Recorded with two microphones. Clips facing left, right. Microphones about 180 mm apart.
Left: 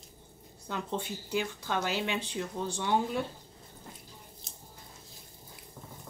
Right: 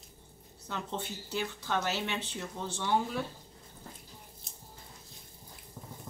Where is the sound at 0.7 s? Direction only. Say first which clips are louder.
Left 3 dB; 15° left (ahead or behind).